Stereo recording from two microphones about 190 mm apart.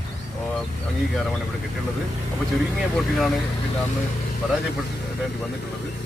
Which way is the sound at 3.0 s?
Centre (ahead or behind).